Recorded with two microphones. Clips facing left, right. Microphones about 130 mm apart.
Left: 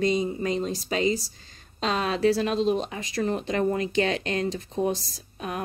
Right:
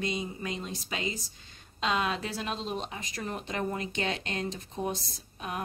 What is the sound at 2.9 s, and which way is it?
Speech, 90° left.